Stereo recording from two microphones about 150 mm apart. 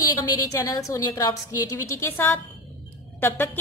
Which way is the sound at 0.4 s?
20° left (ahead or behind).